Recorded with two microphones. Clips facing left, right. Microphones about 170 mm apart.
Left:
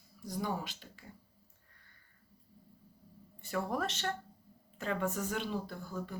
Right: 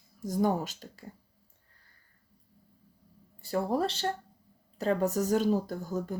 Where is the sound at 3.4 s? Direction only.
35° right (ahead or behind).